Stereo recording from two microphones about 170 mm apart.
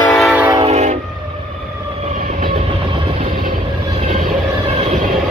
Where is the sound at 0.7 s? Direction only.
40° right (ahead or behind).